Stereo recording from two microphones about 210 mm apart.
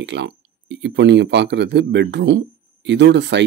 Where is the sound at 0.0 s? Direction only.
55° right (ahead or behind).